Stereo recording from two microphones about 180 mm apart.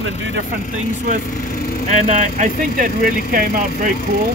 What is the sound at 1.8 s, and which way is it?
Speech, 40° right (ahead or behind).